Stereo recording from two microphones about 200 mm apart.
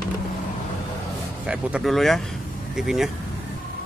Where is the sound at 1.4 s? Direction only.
5° right (ahead or behind).